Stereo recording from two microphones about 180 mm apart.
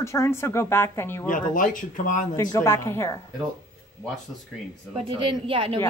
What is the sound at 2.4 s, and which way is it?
Speech, 15° left (ahead or behind).